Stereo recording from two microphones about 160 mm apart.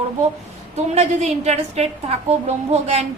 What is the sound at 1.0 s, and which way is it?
A woman's voice, 45° right (ahead or behind).